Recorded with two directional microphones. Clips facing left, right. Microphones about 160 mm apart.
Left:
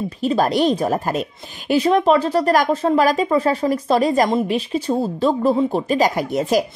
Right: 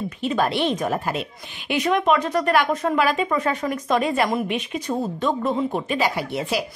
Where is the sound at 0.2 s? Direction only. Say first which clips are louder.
Left 5 dB; 40° left (ahead or behind).